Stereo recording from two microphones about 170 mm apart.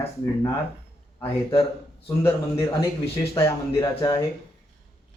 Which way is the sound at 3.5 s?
20° left (ahead or behind).